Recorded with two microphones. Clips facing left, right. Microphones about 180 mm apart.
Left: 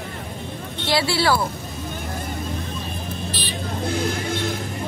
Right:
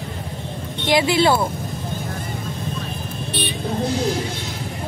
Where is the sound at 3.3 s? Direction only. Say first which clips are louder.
Right 4 dB; 60° right (ahead or behind).